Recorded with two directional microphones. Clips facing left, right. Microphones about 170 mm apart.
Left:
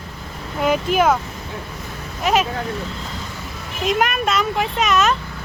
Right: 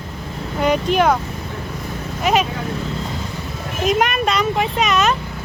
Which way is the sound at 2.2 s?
Centre (ahead or behind).